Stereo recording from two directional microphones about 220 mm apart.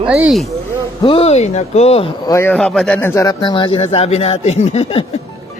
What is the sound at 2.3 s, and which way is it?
Speech, 10° left (ahead or behind).